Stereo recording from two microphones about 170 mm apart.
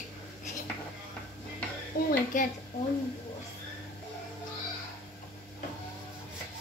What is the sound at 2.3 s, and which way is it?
Speech, 50° left (ahead or behind).